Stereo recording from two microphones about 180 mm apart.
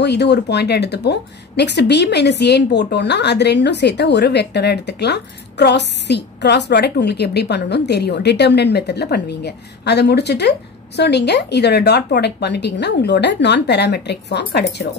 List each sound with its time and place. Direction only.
0.0 s speech: 70° left (ahead or behind)